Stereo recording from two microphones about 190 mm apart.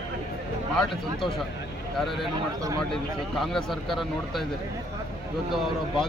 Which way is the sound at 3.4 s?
Centre (ahead or behind).